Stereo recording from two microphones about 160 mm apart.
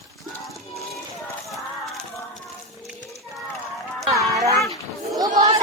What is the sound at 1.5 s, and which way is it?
Clip-clop, centre (ahead or behind).